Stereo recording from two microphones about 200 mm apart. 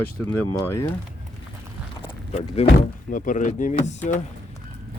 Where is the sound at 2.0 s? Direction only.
30° left (ahead or behind).